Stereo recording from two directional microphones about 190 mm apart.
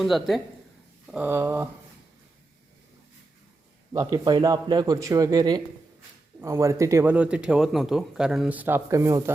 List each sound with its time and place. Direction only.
0.0 s a man's voice: centre (ahead or behind)
3.9 s speech: 20° right (ahead or behind)